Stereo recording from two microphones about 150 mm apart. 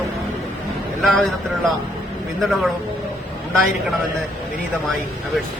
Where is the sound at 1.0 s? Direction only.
Centre (ahead or behind).